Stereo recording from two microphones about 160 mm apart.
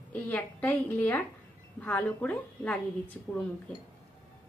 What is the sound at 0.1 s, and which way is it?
A woman's voice, 10° left (ahead or behind).